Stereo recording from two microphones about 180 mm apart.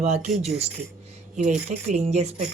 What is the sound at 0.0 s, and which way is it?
Speech, 40° right (ahead or behind).